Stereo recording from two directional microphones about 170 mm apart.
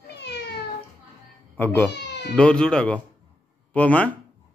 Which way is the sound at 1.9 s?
90° left.